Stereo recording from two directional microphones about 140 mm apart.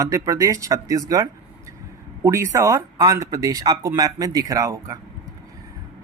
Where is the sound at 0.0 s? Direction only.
20° right (ahead or behind).